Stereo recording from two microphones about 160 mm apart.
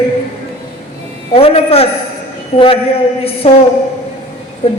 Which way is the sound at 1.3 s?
40° left (ahead or behind).